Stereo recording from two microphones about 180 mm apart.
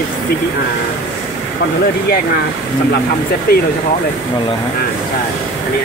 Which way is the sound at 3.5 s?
60° left (ahead or behind).